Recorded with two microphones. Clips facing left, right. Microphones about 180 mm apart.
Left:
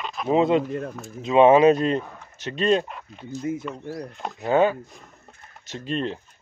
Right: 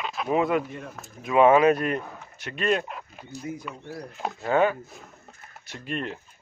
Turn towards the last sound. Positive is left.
turn(degrees=25)  # may be behind; listen again after turning